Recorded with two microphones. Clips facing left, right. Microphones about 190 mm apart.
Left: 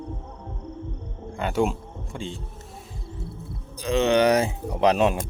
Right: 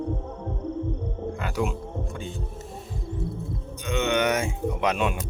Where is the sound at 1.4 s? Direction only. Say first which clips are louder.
Left 6 dB; 30° left (ahead or behind).